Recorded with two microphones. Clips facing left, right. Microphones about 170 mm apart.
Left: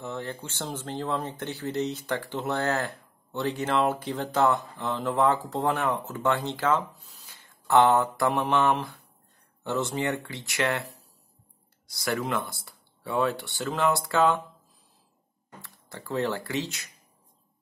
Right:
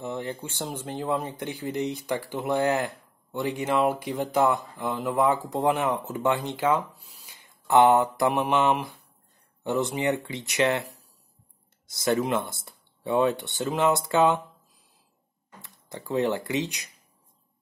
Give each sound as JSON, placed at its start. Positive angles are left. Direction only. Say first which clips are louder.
{"t": 0.0, "sound": "speech", "louder": "right 2 dB", "side_deg": -15}
{"t": 15.6, "sound": "speech", "louder": "right 4 dB", "side_deg": -20}